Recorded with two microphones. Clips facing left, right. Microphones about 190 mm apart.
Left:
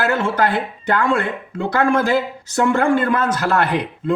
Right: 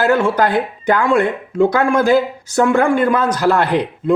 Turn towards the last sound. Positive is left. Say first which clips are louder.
# right 4 dB
turn(degrees=-15)  # may be behind; listen again after turning